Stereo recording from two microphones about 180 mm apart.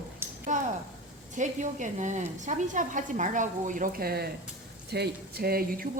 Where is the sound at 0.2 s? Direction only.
10° right (ahead or behind).